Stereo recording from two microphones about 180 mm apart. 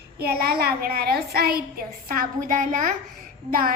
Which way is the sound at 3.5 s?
50° right (ahead or behind).